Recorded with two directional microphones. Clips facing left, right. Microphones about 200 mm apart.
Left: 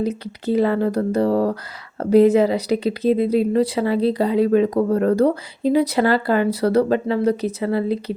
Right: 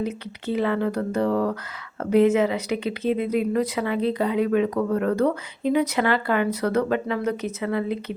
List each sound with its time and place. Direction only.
0.0 s speech: 35° left (ahead or behind)